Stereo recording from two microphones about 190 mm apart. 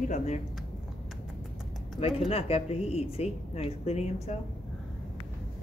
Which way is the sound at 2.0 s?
30° left (ahead or behind).